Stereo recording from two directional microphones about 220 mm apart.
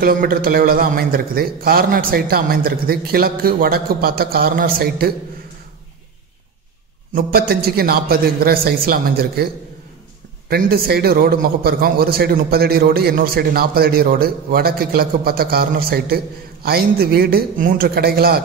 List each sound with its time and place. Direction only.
0.0 s a man's voice: 40° right (ahead or behind)
7.2 s a man's voice: 45° right (ahead or behind)
10.5 s a man's voice: 45° right (ahead or behind)